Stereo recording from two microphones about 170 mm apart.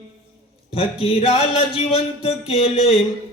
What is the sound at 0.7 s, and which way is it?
Speech, 35° left (ahead or behind).